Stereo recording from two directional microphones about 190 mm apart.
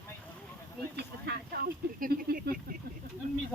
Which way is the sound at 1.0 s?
55° right (ahead or behind).